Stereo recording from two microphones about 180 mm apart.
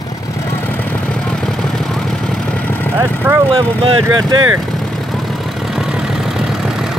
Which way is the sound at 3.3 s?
10° right (ahead or behind).